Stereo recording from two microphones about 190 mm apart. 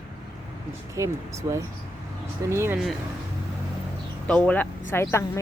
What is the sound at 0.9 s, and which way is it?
Speech, 15° right (ahead or behind).